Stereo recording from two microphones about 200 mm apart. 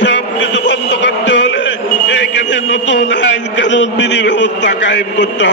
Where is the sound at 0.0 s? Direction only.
65° left (ahead or behind).